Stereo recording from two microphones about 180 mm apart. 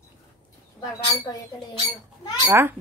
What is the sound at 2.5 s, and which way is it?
Speech, 10° right (ahead or behind).